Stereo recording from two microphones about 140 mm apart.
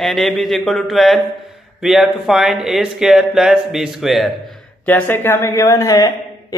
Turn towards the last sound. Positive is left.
turn(degrees=25)  # may be behind; listen again after turning